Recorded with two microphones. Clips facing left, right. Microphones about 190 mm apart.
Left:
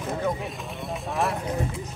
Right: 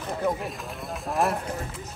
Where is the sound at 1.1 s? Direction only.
Centre (ahead or behind).